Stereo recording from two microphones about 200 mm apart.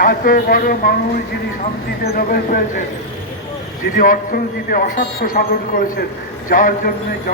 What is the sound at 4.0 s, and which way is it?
Speech, 45° left (ahead or behind).